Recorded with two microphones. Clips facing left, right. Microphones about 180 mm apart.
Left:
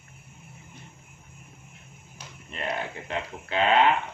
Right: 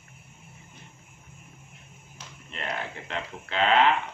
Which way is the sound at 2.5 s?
15° left (ahead or behind).